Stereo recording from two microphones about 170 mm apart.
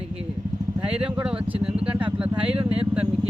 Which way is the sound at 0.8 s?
5° right (ahead or behind).